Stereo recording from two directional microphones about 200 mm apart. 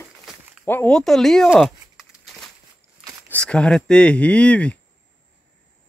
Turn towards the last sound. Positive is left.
turn(degrees=5)  # may be behind; listen again after turning